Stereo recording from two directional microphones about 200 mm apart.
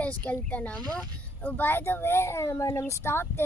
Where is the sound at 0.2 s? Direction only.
5° left (ahead or behind).